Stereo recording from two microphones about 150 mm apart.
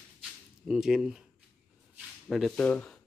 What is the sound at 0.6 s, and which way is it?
Speech, centre (ahead or behind).